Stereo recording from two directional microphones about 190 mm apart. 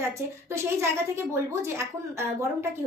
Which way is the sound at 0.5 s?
15° right (ahead or behind).